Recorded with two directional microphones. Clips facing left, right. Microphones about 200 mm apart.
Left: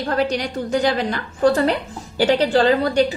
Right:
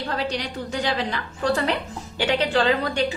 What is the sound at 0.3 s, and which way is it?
A woman's voice, 50° left (ahead or behind).